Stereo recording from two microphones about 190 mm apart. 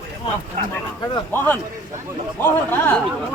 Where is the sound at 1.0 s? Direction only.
15° left (ahead or behind).